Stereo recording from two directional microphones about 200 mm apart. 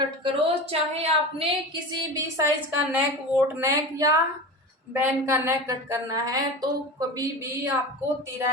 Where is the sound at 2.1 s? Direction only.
15° right (ahead or behind).